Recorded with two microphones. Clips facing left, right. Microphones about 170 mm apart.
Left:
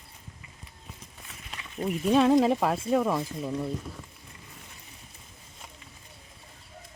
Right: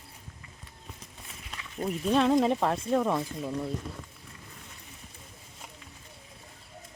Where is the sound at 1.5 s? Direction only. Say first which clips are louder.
Left 2 dB; 5° left (ahead or behind).